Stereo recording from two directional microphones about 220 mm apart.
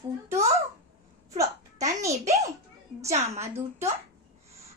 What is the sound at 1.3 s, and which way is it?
Speech, 15° right (ahead or behind).